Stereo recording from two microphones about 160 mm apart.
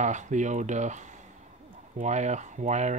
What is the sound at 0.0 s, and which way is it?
Speech, 50° right (ahead or behind).